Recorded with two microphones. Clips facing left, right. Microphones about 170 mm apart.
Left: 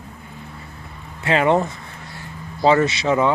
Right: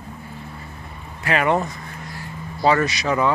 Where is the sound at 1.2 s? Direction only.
25° left (ahead or behind).